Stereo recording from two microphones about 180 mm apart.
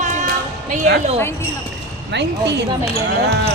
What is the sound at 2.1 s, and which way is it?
Speech, 75° right (ahead or behind).